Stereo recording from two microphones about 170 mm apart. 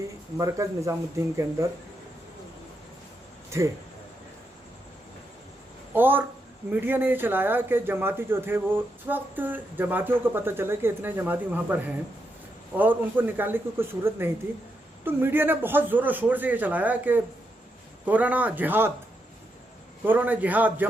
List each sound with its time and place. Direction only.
0.3 s speech: 20° right (ahead or behind)
5.9 s speech: 10° right (ahead or behind)
20.1 s speech: 10° right (ahead or behind)